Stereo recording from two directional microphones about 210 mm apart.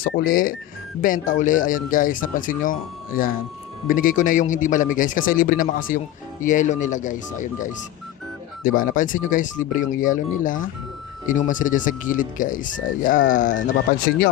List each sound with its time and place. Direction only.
0.1 s speech: 45° left (ahead or behind)